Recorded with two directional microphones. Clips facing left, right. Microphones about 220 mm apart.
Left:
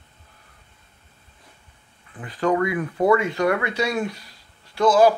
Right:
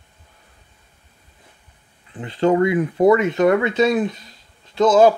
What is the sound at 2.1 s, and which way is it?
Speech, 25° right (ahead or behind).